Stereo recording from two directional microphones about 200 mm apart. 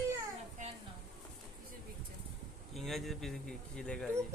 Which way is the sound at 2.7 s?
Centre (ahead or behind).